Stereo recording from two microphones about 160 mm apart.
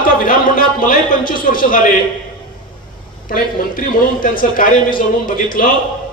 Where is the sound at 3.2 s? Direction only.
60° left (ahead or behind).